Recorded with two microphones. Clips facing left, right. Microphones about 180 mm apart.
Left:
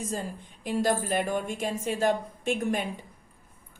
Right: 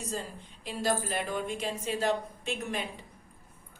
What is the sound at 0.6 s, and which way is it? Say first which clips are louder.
A woman's voice: left 4 dB; 50° left (ahead or behind).